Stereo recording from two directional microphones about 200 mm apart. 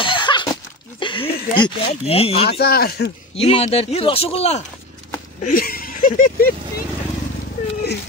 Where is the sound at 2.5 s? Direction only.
50° left (ahead or behind).